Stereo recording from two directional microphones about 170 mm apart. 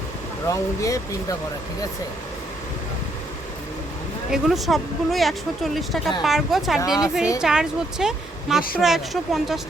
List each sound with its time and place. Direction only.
0.4 s speech: 20° left (ahead or behind)
4.3 s speech: centre (ahead or behind)